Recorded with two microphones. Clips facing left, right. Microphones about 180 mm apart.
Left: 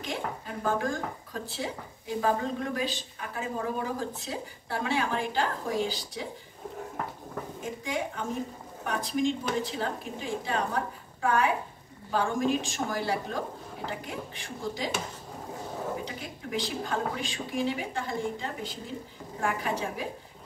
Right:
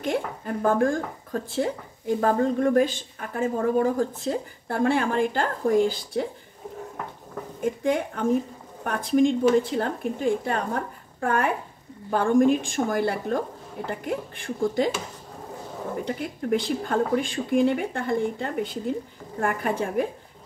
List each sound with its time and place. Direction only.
0.0 s speech: 55° right (ahead or behind)
7.6 s speech: 55° right (ahead or behind)
16.1 s speech: 55° right (ahead or behind)